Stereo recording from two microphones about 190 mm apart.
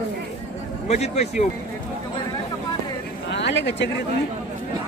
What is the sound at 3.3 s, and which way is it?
Speech, 65° left (ahead or behind).